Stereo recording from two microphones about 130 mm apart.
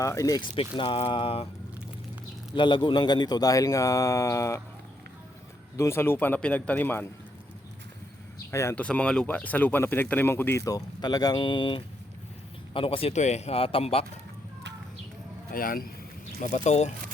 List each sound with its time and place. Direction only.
0.0 s speech: 25° left (ahead or behind)
0.8 s speech: 45° left (ahead or behind)
2.6 s speech: 40° left (ahead or behind); by 4.6 s 25° left (ahead or behind)
5.7 s speech: 20° left (ahead or behind)
8.4 s speech: 20° left (ahead or behind)
8.7 s speech: 10° left (ahead or behind); by 13.1 s 45° left (ahead or behind)
13.1 s speech: 60° left (ahead or behind)
15.5 s speech: 90° left
16.4 s speech: 60° left (ahead or behind)